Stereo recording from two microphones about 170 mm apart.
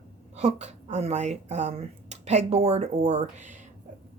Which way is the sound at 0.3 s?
45° right (ahead or behind).